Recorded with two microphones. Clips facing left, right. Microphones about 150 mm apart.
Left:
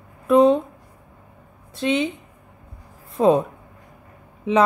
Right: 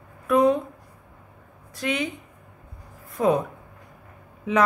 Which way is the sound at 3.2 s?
25° left (ahead or behind).